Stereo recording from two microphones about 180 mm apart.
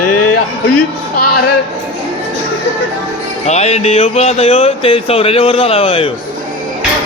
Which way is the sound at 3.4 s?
40° left (ahead or behind).